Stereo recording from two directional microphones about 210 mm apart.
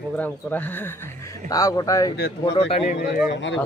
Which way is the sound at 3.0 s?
60° left (ahead or behind).